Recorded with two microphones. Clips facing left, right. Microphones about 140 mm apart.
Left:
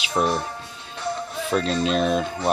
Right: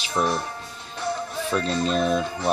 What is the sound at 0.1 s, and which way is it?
Speech, 25° left (ahead or behind).